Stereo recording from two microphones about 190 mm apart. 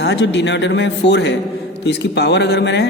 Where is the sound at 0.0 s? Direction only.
65° left (ahead or behind).